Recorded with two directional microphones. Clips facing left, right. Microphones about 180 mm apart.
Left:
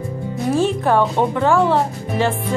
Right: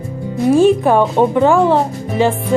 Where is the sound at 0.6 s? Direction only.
15° right (ahead or behind).